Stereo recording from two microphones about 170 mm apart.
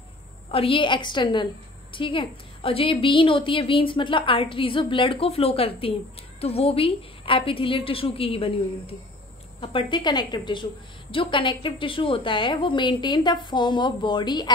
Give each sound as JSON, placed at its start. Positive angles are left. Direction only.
{"t": 0.5, "sound": "a woman's voice", "side_deg": 30}